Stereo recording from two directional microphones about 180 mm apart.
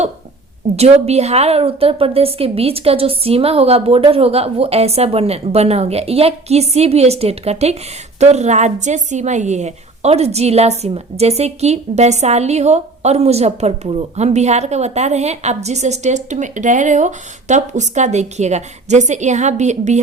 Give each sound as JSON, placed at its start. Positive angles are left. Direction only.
{"t": 0.8, "sound": "a woman's voice", "side_deg": -35}